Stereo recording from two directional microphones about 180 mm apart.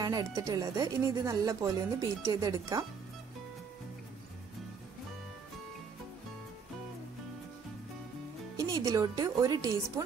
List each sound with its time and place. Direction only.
0.0 s speech: 20° right (ahead or behind)
8.5 s speech: 20° right (ahead or behind)